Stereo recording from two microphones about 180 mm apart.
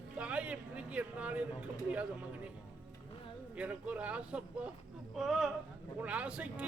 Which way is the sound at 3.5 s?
10° right (ahead or behind).